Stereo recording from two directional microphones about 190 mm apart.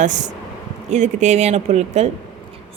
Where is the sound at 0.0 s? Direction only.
40° right (ahead or behind).